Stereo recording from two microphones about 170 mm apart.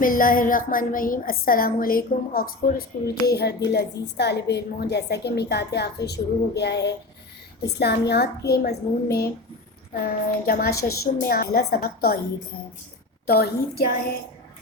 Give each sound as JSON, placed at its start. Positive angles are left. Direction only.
{"t": 0.0, "sound": "a woman's voice", "side_deg": 55}
{"t": 3.2, "sound": "a woman's voice", "side_deg": 70}
{"t": 13.2, "sound": "a woman's voice", "side_deg": 65}